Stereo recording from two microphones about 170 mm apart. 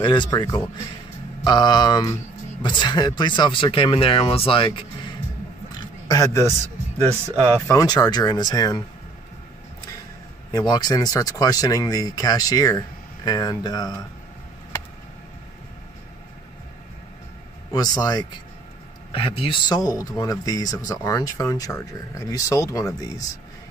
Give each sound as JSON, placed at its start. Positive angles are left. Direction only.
{"t": 0.0, "sound": "speech", "side_deg": 25}
{"t": 5.8, "sound": "a sound", "side_deg": 20}
{"t": 7.6, "sound": "speech", "side_deg": 20}
{"t": 10.5, "sound": "speech", "side_deg": 25}
{"t": 17.7, "sound": "speech", "side_deg": 25}
{"t": 19.4, "sound": "speech", "side_deg": 25}